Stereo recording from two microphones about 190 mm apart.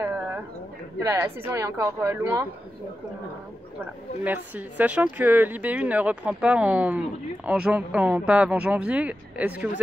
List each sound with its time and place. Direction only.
0.9 s speech: 15° right (ahead or behind)
4.2 s speech: 10° right (ahead or behind)